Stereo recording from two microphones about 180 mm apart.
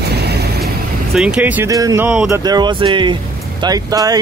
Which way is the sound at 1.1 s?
5° right (ahead or behind).